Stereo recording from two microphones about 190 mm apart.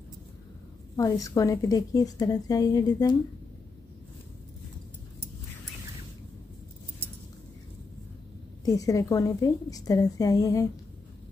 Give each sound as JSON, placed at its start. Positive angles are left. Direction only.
{"t": 0.9, "sound": "a woman's voice", "side_deg": 20}
{"t": 8.6, "sound": "a woman's voice", "side_deg": 20}